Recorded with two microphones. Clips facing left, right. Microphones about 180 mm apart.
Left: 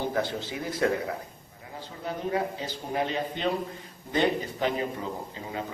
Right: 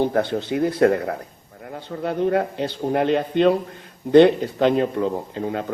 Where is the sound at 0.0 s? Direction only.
60° right (ahead or behind).